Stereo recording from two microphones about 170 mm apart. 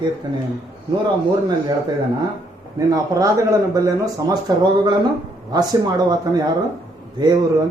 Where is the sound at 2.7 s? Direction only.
20° right (ahead or behind).